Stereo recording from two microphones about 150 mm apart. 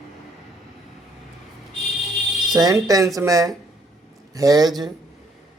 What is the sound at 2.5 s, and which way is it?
Speech, 25° right (ahead or behind).